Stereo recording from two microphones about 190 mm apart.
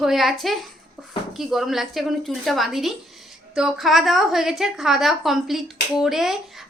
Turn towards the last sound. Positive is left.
turn(degrees=0)  # may be behind; listen again after turning